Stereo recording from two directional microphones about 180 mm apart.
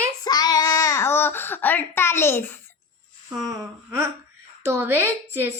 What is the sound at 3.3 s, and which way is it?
A woman's voice, 20° right (ahead or behind).